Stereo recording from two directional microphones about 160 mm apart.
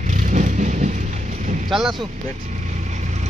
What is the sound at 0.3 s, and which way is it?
Vehicle, 50° right (ahead or behind).